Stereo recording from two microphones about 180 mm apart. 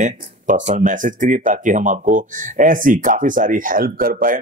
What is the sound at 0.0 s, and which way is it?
Speech, 45° right (ahead or behind).